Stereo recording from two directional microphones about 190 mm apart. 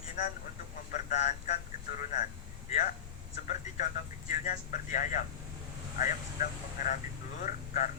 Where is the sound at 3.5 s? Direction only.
40° left (ahead or behind).